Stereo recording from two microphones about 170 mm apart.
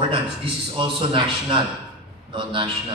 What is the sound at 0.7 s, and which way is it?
A man's voice, 30° right (ahead or behind).